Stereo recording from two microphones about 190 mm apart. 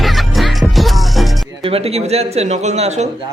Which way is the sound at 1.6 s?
30° right (ahead or behind).